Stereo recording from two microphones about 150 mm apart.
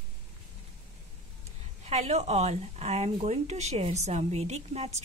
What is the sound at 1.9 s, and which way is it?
Speech, 45° right (ahead or behind).